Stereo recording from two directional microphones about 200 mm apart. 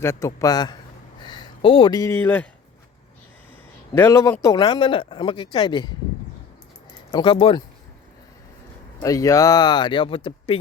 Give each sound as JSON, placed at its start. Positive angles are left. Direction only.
{"t": 0.0, "sound": "a man's voice", "side_deg": 15}
{"t": 3.9, "sound": "a man's voice", "side_deg": 15}
{"t": 6.9, "sound": "speech", "side_deg": 25}
{"t": 9.0, "sound": "speech", "side_deg": 15}